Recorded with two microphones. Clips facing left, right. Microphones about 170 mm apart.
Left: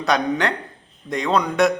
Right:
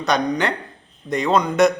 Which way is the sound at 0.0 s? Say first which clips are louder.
Even; centre (ahead or behind).